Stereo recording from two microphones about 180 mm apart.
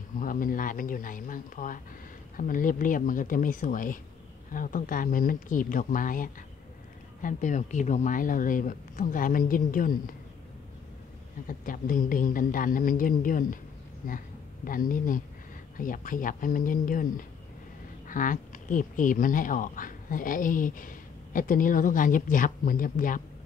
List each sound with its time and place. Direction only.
0.2 s speech: 50° left (ahead or behind)
11.4 s speech: 50° left (ahead or behind)